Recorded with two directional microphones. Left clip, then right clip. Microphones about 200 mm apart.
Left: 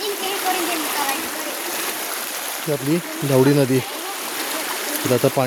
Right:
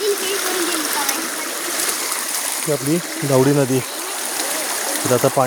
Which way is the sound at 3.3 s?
15° left (ahead or behind).